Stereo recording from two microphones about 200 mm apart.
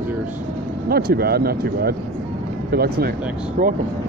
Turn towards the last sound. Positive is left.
turn(degrees=-40)  # may be behind; listen again after turning